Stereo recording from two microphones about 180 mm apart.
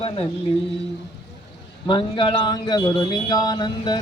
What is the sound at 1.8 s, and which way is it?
Speech, 25° left (ahead or behind).